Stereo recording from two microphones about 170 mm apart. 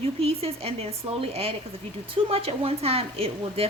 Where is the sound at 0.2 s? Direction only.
35° right (ahead or behind).